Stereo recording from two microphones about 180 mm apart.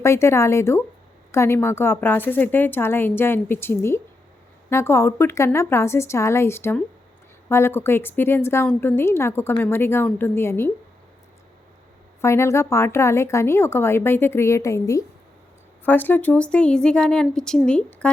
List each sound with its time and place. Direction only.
0.0 s a woman's voice: 15° left (ahead or behind)
12.2 s a woman's voice: 15° left (ahead or behind)